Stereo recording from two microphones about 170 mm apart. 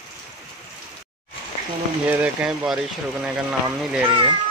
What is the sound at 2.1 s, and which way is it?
Speech, 10° right (ahead or behind).